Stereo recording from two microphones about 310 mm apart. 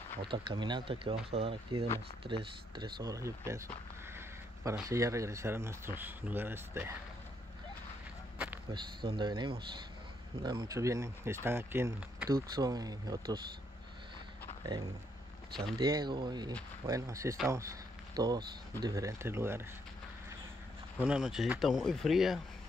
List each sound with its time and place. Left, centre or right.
0.3 s speech: centre
4.6 s speech: centre
8.4 s a sound: centre
9.0 s speech: centre
15.6 s speech: centre
21.0 s speech: centre